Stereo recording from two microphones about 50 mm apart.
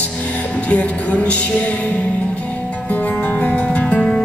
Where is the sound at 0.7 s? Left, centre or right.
Left.